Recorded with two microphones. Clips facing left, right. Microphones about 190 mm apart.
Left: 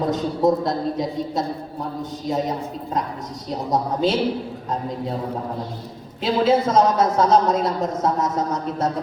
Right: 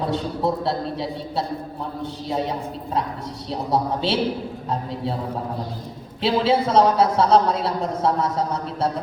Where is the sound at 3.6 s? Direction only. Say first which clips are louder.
Left 2 dB; 30° right (ahead or behind).